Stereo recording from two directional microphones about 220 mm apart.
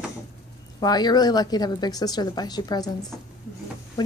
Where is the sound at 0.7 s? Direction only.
20° left (ahead or behind).